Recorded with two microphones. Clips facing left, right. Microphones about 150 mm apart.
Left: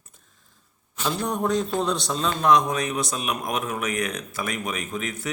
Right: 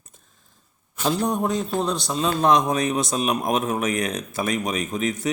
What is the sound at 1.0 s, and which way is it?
Speech, 35° right (ahead or behind).